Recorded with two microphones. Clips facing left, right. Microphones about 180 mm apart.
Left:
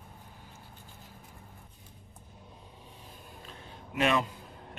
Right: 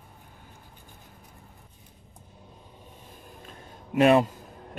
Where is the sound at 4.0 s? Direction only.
40° right (ahead or behind).